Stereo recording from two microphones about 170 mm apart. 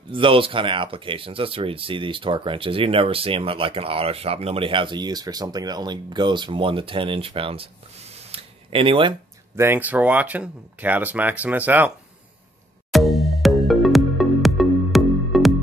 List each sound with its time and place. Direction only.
0.1 s speech: 30° right (ahead or behind)
8.2 s a sound: 35° right (ahead or behind)
9.6 s speech: 10° right (ahead or behind)
12.9 s music: centre (ahead or behind)